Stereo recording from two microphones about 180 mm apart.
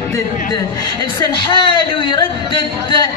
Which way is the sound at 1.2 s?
25° left (ahead or behind).